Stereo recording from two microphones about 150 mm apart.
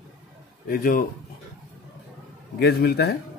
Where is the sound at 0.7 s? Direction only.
70° left (ahead or behind).